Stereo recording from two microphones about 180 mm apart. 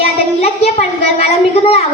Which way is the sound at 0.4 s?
35° left (ahead or behind).